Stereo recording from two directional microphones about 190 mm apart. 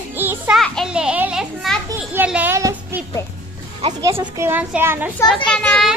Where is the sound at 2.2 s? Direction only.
10° right (ahead or behind).